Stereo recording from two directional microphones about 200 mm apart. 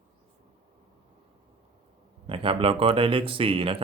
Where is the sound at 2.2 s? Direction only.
25° right (ahead or behind).